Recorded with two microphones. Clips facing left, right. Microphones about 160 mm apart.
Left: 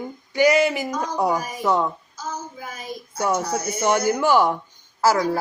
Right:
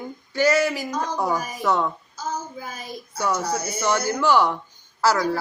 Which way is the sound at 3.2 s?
25° left (ahead or behind).